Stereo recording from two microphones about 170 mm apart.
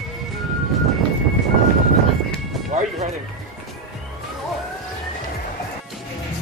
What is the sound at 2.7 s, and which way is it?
Music, 45° right (ahead or behind).